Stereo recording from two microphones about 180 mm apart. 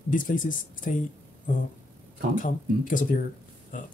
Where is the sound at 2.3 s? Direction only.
50° left (ahead or behind).